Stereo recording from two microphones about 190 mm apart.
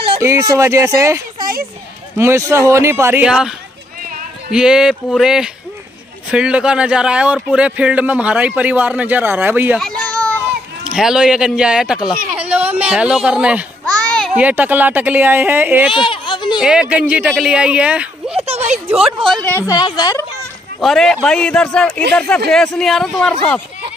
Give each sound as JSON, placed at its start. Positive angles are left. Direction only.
{"t": 0.2, "sound": "a man's voice", "side_deg": -15}
{"t": 1.4, "sound": "speech", "side_deg": -50}
{"t": 2.1, "sound": "a man's voice", "side_deg": -15}
{"t": 9.8, "sound": "speech", "side_deg": 5}
{"t": 12.4, "sound": "a sound", "side_deg": -10}
{"t": 12.8, "sound": "a man's voice", "side_deg": -5}
{"t": 15.9, "sound": "a sound", "side_deg": 25}
{"t": 16.5, "sound": "a man's voice", "side_deg": -5}
{"t": 18.3, "sound": "a sound", "side_deg": -30}
{"t": 18.9, "sound": "a man's voice", "side_deg": -5}
{"t": 20.8, "sound": "a man's voice", "side_deg": 0}